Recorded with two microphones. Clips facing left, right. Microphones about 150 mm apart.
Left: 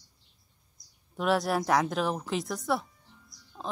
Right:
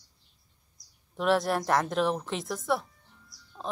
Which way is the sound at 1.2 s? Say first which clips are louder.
Right 1 dB; centre (ahead or behind).